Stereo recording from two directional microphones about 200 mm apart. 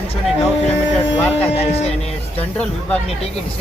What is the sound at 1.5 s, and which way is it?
Speech, 30° left (ahead or behind).